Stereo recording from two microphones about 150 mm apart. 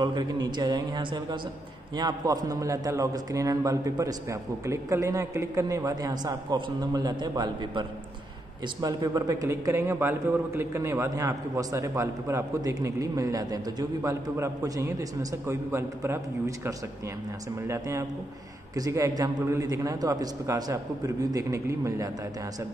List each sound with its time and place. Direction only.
0.0 s a man's voice: 30° right (ahead or behind)
8.8 s a man's voice: 25° right (ahead or behind)